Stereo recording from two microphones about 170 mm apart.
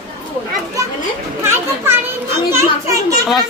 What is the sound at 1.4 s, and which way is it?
A child's voice, 15° right (ahead or behind).